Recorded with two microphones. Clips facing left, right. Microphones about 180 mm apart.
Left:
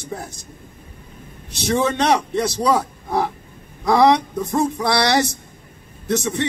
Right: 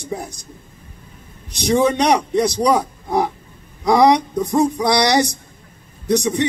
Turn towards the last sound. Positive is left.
turn(degrees=-15)  # may be behind; listen again after turning